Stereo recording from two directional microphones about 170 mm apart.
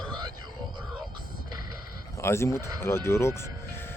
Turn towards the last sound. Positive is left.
turn(degrees=15)  # may be behind; listen again after turning